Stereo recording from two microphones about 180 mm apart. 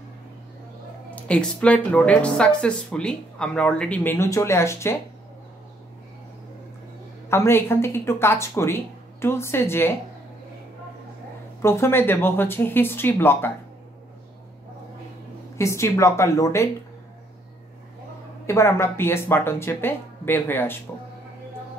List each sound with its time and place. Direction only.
1.1 s speech: 5° left (ahead or behind)
7.2 s speech: 15° left (ahead or behind)
11.6 s speech: 15° left (ahead or behind)
15.5 s speech: 15° left (ahead or behind)
18.5 s speech: 15° left (ahead or behind)